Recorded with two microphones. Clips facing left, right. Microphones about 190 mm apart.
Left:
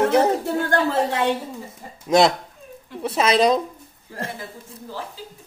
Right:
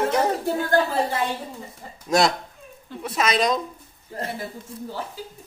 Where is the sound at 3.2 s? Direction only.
30° left (ahead or behind).